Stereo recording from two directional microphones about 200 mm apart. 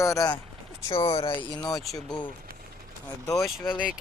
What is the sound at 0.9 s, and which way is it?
Speech, 25° left (ahead or behind).